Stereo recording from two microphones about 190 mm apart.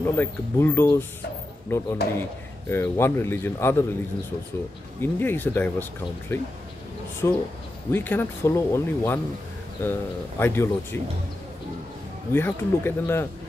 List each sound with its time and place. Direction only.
0.0 s speech: 10° left (ahead or behind)
5.0 s speech: 10° left (ahead or behind)
12.3 s speech: 10° left (ahead or behind)